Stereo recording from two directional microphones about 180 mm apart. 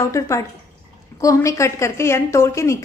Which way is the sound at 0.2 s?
15° left (ahead or behind).